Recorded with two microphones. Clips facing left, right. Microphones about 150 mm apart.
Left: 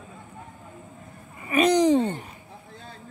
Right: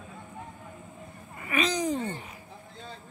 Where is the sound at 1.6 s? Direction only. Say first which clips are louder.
Left 9 dB; 70° left (ahead or behind).